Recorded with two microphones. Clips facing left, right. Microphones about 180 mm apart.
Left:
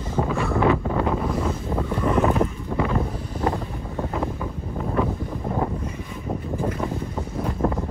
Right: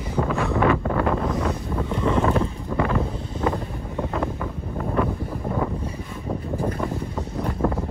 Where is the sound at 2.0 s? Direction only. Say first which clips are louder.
Left 1 dB; 25° right (ahead or behind).